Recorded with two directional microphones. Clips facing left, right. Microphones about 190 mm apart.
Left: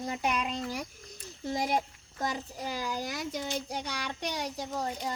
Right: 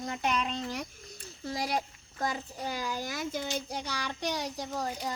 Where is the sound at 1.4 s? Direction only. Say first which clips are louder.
Left 2 dB; 20° left (ahead or behind).